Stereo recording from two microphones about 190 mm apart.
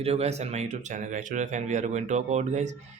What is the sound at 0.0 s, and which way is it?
Speech, 30° right (ahead or behind).